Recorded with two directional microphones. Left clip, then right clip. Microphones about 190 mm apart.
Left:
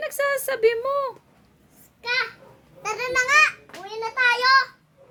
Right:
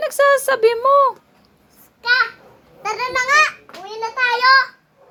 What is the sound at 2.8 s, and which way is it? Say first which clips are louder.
Babbling: right 4 dB; 15° right (ahead or behind).